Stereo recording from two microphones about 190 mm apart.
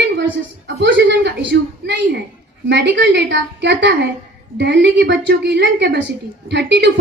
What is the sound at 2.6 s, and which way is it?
A woman's voice, 65° right (ahead or behind).